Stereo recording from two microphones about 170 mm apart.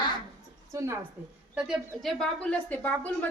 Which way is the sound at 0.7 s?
20° right (ahead or behind).